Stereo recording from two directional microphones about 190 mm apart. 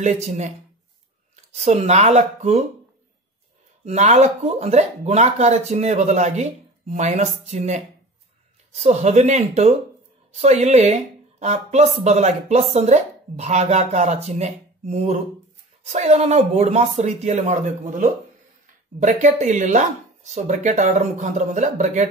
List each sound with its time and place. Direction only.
0.0 s speech: 35° right (ahead or behind)
3.8 s speech: 35° right (ahead or behind)